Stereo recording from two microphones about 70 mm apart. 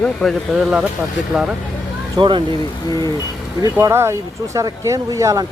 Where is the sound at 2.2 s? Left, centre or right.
Right.